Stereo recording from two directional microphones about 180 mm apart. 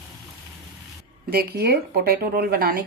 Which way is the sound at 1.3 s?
60° right (ahead or behind).